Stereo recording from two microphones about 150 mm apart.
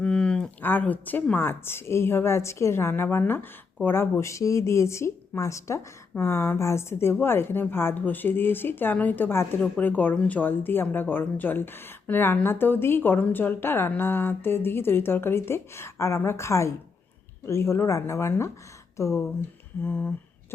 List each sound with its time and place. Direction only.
0.0 s speech: 5° left (ahead or behind)